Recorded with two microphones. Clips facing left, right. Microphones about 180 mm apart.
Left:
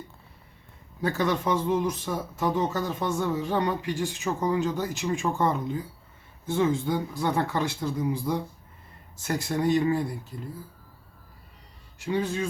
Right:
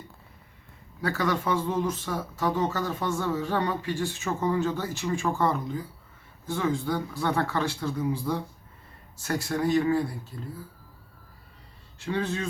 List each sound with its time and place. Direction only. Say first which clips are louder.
1.0 s speech: left 1 dB; 20° left (ahead or behind)
11.9 s speech: left 2 dB; 15° left (ahead or behind)